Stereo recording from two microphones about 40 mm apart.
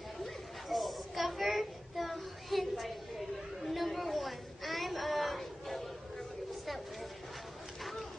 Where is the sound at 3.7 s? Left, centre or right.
Centre.